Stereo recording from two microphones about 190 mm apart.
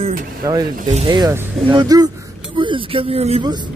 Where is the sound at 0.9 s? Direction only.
35° right (ahead or behind).